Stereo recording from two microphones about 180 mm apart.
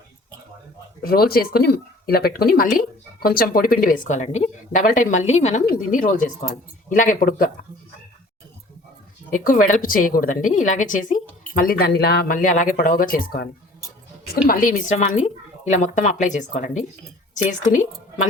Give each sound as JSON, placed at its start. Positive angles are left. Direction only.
{"t": 1.0, "sound": "speech", "side_deg": 60}
{"t": 9.3, "sound": "speech", "side_deg": 50}